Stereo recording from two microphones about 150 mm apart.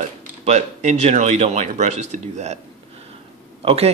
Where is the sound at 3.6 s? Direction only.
40° right (ahead or behind).